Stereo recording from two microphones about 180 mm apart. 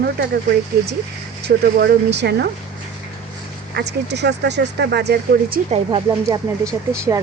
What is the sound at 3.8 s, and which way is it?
Speech, 70° right (ahead or behind).